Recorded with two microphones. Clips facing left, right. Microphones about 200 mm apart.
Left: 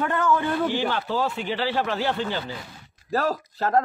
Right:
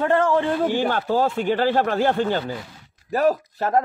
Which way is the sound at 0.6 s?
45° right (ahead or behind).